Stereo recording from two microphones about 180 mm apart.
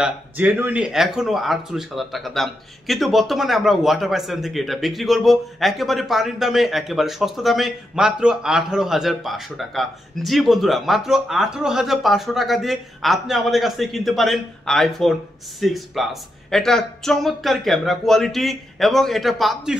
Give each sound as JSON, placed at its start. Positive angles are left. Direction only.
{"t": 0.0, "sound": "speech", "side_deg": -10}